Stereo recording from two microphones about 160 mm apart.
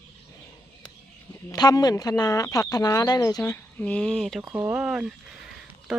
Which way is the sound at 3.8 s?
5° left (ahead or behind).